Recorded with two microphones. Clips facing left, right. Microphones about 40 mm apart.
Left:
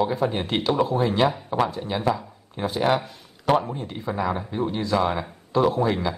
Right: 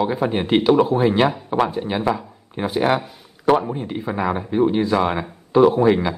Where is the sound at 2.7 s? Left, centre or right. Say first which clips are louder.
Right 3 dB; centre.